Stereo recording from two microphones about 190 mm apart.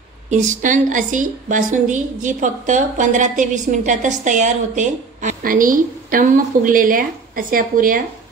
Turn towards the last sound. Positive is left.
turn(degrees=-45)  # may be behind; listen again after turning